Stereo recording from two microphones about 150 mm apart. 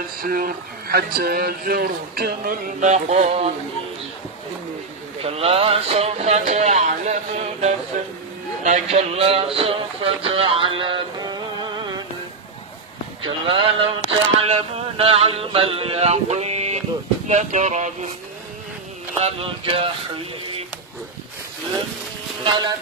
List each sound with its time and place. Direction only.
0.2 s a man's voice: 70° right (ahead or behind)
2.9 s speech: 50° right (ahead or behind)
5.2 s speech: 40° right (ahead or behind); by 8.1 s 60° right (ahead or behind)
8.6 s speech: 45° right (ahead or behind); by 12.0 s 30° right (ahead or behind)
13.2 s speech: 35° right (ahead or behind); by 18.1 s 50° right (ahead or behind)
19.1 s speech: 40° right (ahead or behind)
22.4 s speech: 30° right (ahead or behind)